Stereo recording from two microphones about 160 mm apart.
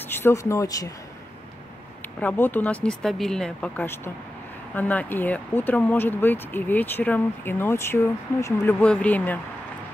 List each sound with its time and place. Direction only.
0.1 s speech: 15° left (ahead or behind)
2.1 s speech: 10° left (ahead or behind)